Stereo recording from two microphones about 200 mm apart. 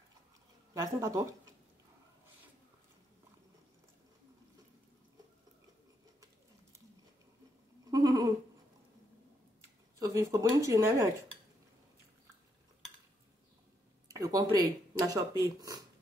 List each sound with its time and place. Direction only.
0.7 s speech: 15° right (ahead or behind)
7.8 s a sound: 20° right (ahead or behind)
9.9 s speech: 15° right (ahead or behind)
14.1 s speech: 20° right (ahead or behind)